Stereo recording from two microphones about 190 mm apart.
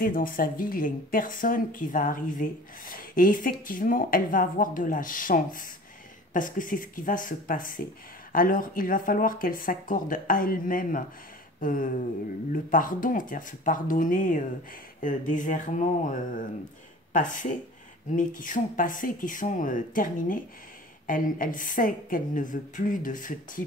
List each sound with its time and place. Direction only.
0.0 s speech: 50° left (ahead or behind)